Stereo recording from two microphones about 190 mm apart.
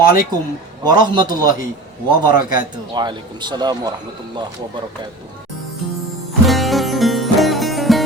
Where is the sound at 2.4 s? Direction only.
45° left (ahead or behind).